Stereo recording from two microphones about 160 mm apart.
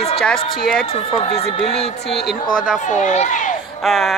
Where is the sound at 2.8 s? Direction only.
50° left (ahead or behind).